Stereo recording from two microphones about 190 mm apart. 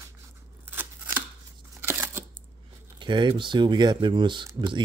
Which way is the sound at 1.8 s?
10° right (ahead or behind).